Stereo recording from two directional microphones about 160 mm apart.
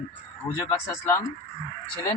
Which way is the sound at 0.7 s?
15° left (ahead or behind).